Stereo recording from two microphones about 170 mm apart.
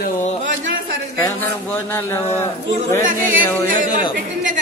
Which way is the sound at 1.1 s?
15° left (ahead or behind).